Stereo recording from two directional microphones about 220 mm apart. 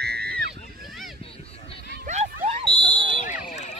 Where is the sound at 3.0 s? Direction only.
35° left (ahead or behind).